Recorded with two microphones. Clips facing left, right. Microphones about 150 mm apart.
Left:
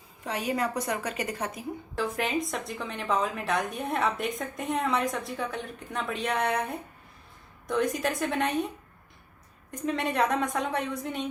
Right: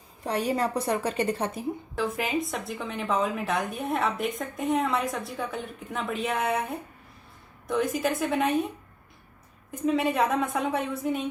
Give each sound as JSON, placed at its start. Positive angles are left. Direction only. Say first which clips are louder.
{"t": 0.3, "sound": "a woman's voice", "louder": "right 3 dB", "side_deg": -35}
{"t": 2.0, "sound": "a woman's voice", "louder": "even", "side_deg": 0}
{"t": 9.7, "sound": "a woman's voice", "louder": "right 3 dB", "side_deg": 0}